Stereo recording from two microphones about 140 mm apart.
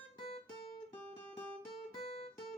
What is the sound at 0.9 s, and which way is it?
Music, 10° left (ahead or behind).